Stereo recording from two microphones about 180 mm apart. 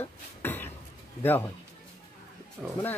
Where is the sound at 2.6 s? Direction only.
5° right (ahead or behind).